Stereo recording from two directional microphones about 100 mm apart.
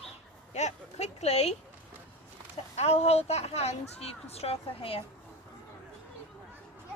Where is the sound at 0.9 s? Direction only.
90° left.